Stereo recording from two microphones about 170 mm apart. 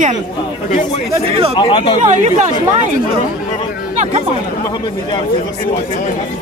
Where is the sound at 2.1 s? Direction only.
45° right (ahead or behind).